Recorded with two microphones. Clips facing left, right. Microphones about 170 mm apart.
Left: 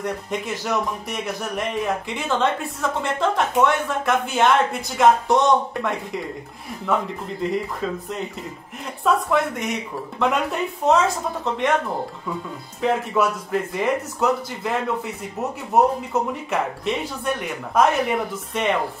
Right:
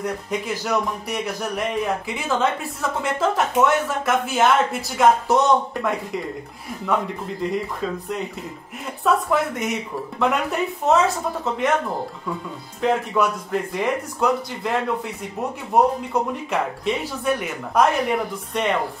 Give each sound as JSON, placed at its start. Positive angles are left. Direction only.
{"t": 0.0, "sound": "speech", "side_deg": 0}
{"t": 7.4, "sound": "speech", "side_deg": 0}
{"t": 12.8, "sound": "speech", "side_deg": 0}